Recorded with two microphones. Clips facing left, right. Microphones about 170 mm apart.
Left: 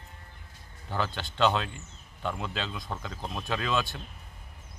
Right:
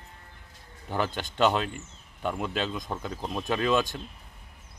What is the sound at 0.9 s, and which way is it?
Speech, 15° right (ahead or behind).